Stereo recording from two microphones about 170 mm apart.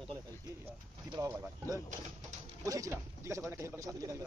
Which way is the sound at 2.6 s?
20° right (ahead or behind).